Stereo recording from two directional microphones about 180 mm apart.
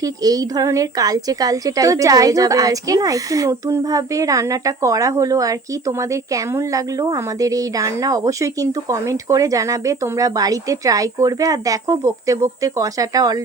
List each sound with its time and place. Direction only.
0.0 s a woman's voice: 20° right (ahead or behind)